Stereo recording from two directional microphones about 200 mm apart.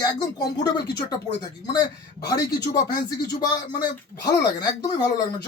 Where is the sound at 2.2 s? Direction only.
20° left (ahead or behind).